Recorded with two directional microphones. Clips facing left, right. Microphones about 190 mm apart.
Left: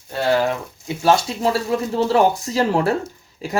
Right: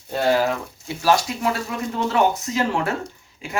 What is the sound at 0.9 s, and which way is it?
Speech, 25° left (ahead or behind).